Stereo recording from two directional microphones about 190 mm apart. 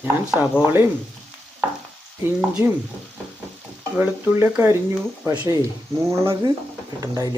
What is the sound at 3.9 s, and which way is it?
Speech, 10° right (ahead or behind).